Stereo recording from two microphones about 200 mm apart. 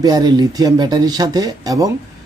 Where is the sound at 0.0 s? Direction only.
20° right (ahead or behind).